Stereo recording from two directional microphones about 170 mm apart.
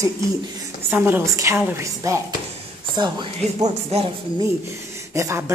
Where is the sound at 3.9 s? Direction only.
35° right (ahead or behind).